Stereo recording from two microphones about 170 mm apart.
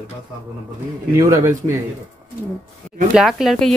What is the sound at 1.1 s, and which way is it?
Speech, 20° right (ahead or behind).